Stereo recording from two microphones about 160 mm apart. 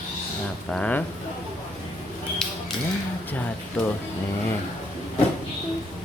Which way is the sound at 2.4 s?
5° left (ahead or behind).